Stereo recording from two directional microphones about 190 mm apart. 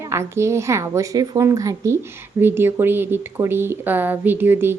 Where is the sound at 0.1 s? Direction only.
15° right (ahead or behind).